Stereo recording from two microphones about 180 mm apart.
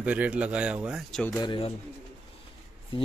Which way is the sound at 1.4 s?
30° left (ahead or behind).